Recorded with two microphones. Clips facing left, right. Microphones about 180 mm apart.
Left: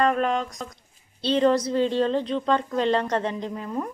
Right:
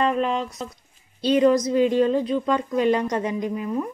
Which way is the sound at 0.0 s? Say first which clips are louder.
Even; 45° left (ahead or behind).